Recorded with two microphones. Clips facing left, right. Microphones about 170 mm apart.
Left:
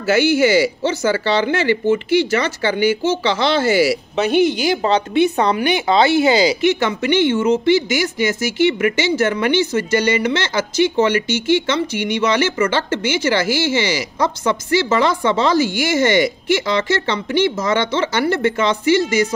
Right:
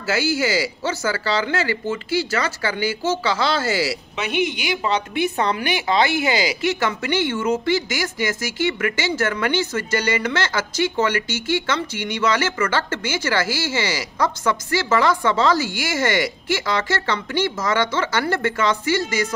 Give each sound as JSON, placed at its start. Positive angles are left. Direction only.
{"t": 0.0, "sound": "a woman's voice", "side_deg": 20}
{"t": 4.2, "sound": "a woman's voice", "side_deg": 35}